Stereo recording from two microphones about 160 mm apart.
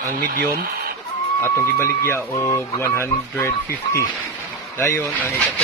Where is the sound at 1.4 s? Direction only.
15° left (ahead or behind).